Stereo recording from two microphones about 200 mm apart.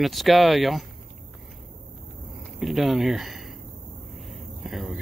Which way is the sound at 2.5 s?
Centre (ahead or behind).